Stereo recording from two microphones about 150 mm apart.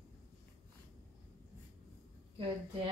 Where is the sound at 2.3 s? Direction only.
35° right (ahead or behind).